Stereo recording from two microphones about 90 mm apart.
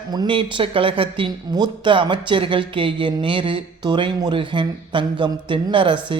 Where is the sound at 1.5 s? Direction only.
60° right (ahead or behind).